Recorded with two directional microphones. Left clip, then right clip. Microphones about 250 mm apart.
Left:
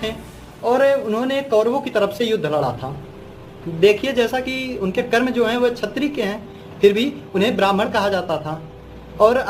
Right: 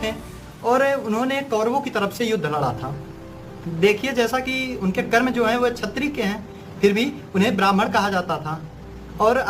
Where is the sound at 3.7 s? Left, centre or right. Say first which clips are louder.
Left 4 dB; centre.